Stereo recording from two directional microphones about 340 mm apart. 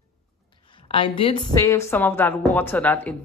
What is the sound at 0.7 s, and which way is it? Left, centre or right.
Speech, centre.